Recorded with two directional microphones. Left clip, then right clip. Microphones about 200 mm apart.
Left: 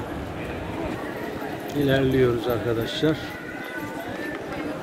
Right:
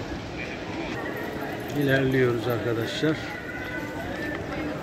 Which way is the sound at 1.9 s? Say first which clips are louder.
Left 2 dB; 20° left (ahead or behind).